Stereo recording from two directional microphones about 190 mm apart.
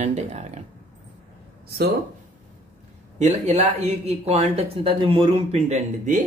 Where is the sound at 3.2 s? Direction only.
35° right (ahead or behind).